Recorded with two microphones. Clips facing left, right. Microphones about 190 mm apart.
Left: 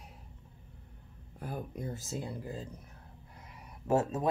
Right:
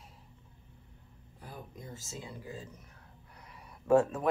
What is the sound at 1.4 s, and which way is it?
Speech, 55° left (ahead or behind).